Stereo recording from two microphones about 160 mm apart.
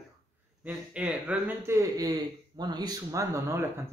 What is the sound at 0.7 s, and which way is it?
Speech, 10° right (ahead or behind).